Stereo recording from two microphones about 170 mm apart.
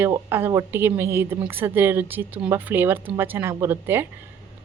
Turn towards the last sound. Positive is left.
turn(degrees=-15)  # may be behind; listen again after turning